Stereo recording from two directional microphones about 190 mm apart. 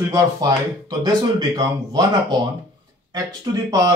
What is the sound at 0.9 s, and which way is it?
Speech, 20° right (ahead or behind).